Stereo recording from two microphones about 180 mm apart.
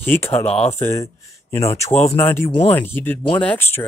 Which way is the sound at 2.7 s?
10° left (ahead or behind).